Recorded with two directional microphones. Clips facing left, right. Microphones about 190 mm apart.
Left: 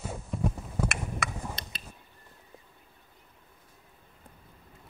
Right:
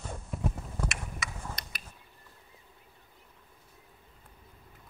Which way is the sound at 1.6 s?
25° left (ahead or behind).